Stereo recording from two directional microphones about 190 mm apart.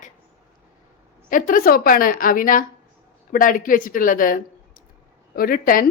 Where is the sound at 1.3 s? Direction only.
45° left (ahead or behind).